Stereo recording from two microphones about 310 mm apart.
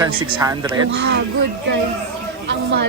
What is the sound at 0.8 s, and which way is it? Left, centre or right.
Speech, right.